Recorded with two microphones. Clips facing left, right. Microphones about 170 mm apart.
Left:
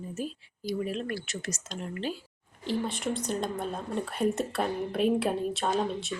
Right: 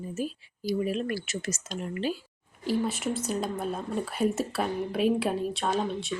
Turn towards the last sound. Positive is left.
turn(degrees=0)  # may be behind; listen again after turning